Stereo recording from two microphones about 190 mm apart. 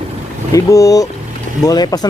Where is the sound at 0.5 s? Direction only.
20° left (ahead or behind).